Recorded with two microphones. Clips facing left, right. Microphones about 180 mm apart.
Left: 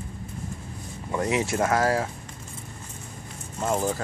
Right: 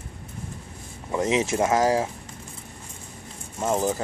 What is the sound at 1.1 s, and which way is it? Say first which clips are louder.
Speech: right 2 dB; 20° right (ahead or behind).